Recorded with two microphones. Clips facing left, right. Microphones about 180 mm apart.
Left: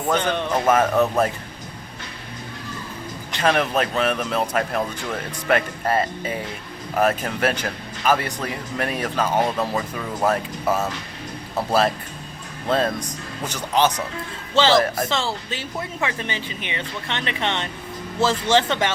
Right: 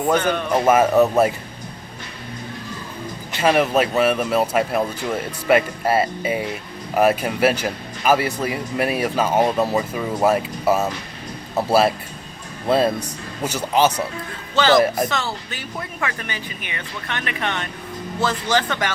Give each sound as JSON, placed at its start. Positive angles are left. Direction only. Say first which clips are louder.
{"t": 0.5, "sound": "speech", "louder": "right 4 dB", "side_deg": -10}
{"t": 3.3, "sound": "speech", "louder": "right 3 dB", "side_deg": -5}
{"t": 14.5, "sound": "speech", "louder": "right 2 dB", "side_deg": 25}